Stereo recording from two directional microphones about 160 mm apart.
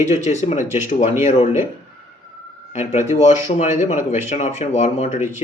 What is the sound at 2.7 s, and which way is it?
Speech, 45° left (ahead or behind).